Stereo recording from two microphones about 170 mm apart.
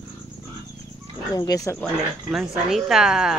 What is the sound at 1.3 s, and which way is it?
Speech, 20° left (ahead or behind).